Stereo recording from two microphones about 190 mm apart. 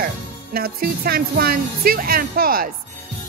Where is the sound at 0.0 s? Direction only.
50° right (ahead or behind).